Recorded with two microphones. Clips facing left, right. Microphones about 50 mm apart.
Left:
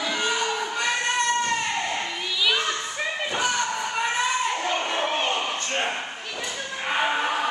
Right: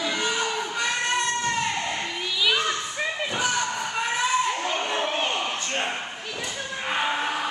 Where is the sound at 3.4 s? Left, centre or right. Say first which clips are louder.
Left 1 dB; centre.